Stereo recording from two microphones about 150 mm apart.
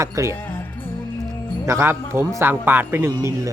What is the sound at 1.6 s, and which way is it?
A man's voice, 15° right (ahead or behind).